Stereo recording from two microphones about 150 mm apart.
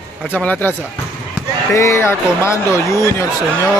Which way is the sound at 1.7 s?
20° left (ahead or behind).